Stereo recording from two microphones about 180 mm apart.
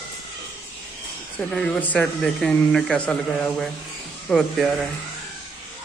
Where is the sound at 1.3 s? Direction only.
5° left (ahead or behind).